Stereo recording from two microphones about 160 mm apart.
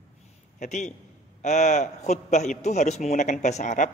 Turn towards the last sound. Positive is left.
turn(degrees=50)  # may be behind; listen again after turning